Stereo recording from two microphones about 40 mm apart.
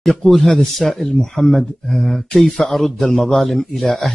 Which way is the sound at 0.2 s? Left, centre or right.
Centre.